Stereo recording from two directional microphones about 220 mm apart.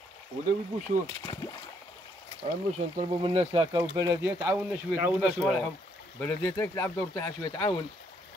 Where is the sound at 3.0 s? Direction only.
25° right (ahead or behind).